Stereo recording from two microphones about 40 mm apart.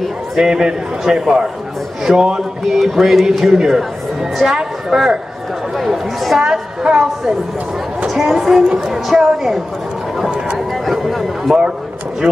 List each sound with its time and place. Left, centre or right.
0.4 s a man's voice: centre
6.4 s a woman's voice: centre
8.1 s a man's voice: centre
10.7 s a sound: centre